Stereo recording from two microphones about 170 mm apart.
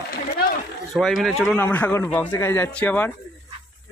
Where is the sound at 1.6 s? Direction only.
10° left (ahead or behind).